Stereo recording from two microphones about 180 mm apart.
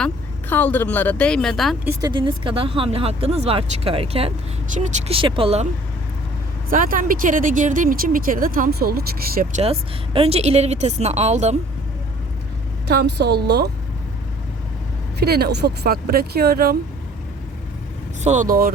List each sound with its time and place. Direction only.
0.5 s speech: 10° left (ahead or behind)
1.8 s speech: 15° right (ahead or behind); by 5.6 s 30° right (ahead or behind)
6.7 s speech: 50° right (ahead or behind)
9.6 s speech: 35° right (ahead or behind)
12.9 s speech: 65° right (ahead or behind)
15.2 s speech: 60° right (ahead or behind)
18.2 s speech: 40° right (ahead or behind)